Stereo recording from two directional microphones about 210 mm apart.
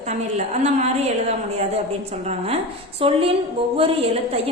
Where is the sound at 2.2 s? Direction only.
30° right (ahead or behind).